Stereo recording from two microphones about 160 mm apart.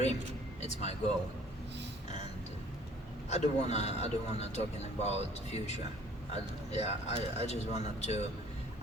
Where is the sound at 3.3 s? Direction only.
45° left (ahead or behind).